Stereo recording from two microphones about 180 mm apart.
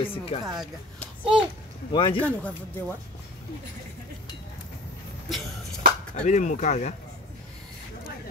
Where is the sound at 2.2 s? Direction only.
5° left (ahead or behind).